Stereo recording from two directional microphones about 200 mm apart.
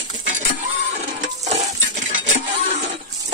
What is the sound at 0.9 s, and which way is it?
Stir, 35° right (ahead or behind).